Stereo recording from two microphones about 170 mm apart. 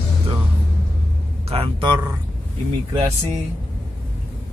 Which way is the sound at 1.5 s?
30° right (ahead or behind).